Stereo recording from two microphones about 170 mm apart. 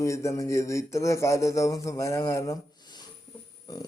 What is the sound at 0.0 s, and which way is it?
A man's voice, 15° left (ahead or behind).